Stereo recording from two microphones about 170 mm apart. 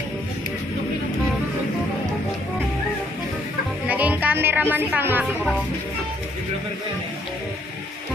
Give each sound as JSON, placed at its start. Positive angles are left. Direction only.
{"t": 3.8, "sound": "music", "side_deg": -10}
{"t": 5.2, "sound": "speech", "side_deg": 0}